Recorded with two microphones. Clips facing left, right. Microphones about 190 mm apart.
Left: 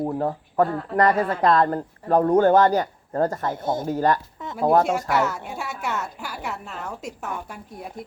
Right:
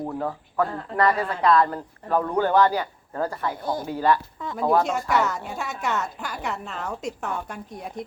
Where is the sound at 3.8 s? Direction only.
45° left (ahead or behind).